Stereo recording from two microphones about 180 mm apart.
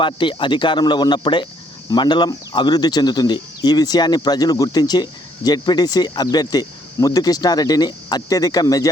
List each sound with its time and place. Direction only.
0.0 s speech: 25° left (ahead or behind)